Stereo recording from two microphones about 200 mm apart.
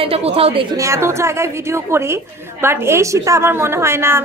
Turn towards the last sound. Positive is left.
turn(degrees=-10)  # may be behind; listen again after turning